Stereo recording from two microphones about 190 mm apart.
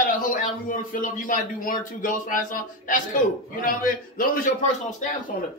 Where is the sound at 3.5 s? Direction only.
45° left (ahead or behind).